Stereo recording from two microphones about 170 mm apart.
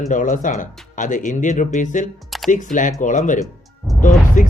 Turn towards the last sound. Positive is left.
turn(degrees=50)  # may be behind; listen again after turning